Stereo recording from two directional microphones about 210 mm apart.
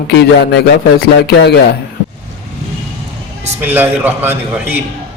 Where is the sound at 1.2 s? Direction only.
50° left (ahead or behind).